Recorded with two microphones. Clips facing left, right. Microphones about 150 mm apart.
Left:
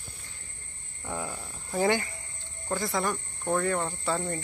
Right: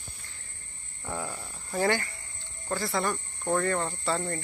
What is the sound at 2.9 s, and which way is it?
Speech, centre (ahead or behind).